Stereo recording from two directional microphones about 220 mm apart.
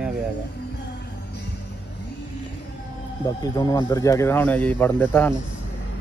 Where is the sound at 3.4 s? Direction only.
20° left (ahead or behind).